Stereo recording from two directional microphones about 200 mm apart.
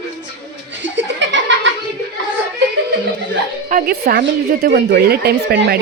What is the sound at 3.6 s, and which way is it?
A woman's voice, 45° right (ahead or behind).